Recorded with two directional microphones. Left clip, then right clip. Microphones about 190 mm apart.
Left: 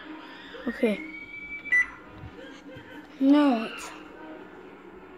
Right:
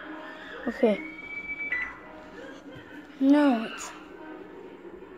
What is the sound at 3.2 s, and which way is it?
Speech, centre (ahead or behind).